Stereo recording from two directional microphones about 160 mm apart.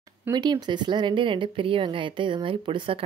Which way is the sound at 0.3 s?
25° right (ahead or behind).